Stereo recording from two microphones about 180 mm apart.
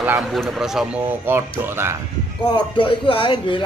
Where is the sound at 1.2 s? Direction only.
15° right (ahead or behind).